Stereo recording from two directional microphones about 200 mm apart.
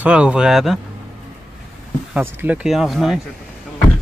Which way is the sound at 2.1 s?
10° right (ahead or behind).